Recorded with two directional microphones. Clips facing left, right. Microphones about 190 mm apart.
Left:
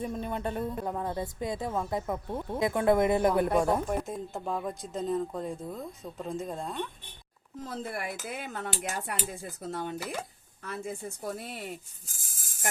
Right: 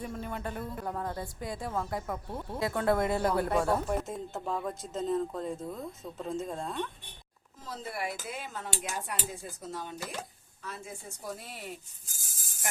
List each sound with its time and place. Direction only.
0.0 s a woman's voice: 20° left (ahead or behind)
3.9 s speech: centre (ahead or behind)
7.7 s speech: 55° left (ahead or behind)